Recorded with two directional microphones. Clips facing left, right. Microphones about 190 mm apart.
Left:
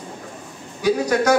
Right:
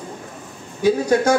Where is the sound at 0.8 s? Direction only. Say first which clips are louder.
Right 2 dB; 25° right (ahead or behind).